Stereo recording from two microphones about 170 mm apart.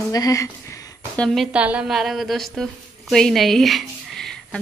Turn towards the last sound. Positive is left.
turn(degrees=0)  # may be behind; listen again after turning